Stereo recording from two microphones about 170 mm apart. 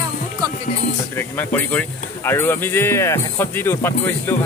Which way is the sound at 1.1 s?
10° left (ahead or behind).